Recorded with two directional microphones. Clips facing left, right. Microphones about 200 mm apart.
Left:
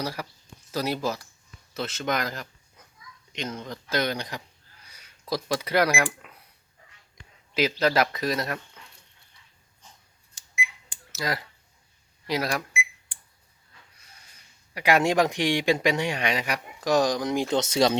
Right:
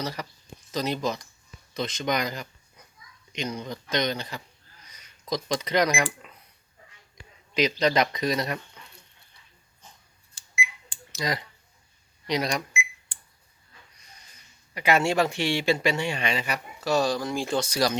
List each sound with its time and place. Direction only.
0.0 s speech: 10° left (ahead or behind)
7.5 s speech: 5° left (ahead or behind)
11.1 s speech: 5° left (ahead or behind)
14.7 s speech: 10° left (ahead or behind)